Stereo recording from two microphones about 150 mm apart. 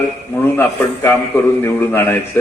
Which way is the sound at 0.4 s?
15° left (ahead or behind).